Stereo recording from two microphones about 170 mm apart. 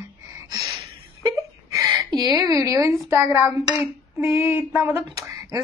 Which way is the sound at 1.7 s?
20° right (ahead or behind).